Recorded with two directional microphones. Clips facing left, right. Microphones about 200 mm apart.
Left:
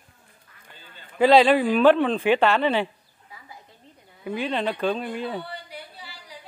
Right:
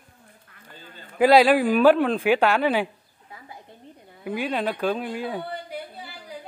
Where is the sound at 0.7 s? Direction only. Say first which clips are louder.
Right 4 dB; 45° right (ahead or behind).